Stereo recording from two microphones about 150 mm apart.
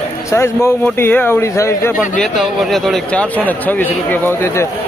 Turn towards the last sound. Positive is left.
turn(degrees=15)  # may be behind; listen again after turning